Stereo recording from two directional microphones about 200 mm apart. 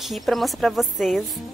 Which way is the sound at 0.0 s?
Centre (ahead or behind).